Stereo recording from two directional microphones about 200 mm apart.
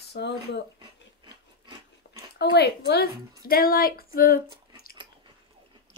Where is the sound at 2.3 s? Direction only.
55° left (ahead or behind).